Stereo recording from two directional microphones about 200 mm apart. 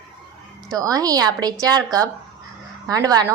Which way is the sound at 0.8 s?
20° right (ahead or behind).